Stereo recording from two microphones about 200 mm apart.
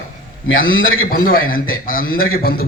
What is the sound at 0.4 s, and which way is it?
Speech, 80° left.